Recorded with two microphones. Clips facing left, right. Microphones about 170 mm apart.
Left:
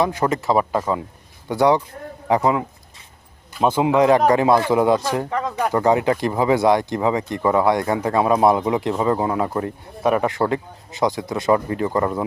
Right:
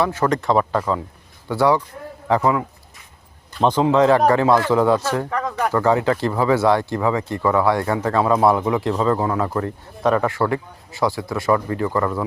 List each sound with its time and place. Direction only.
0.0 s speech: 15° left (ahead or behind)
0.3 s speech: 5° left (ahead or behind)
0.6 s a man's voice: 20° left (ahead or behind)
3.5 s speech: 10° left (ahead or behind)